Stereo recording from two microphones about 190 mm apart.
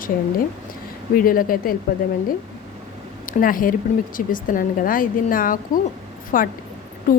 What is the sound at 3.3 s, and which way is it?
A woman's voice, 45° left (ahead or behind).